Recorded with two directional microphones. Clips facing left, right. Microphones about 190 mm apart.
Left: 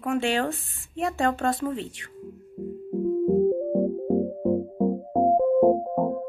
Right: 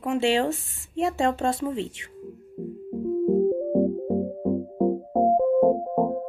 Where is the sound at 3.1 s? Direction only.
Centre (ahead or behind).